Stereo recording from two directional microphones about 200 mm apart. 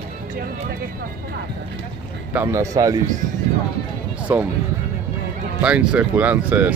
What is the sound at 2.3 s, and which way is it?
Speech, 10° right (ahead or behind).